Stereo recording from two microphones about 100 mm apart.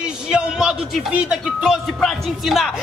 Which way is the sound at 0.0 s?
10° right (ahead or behind).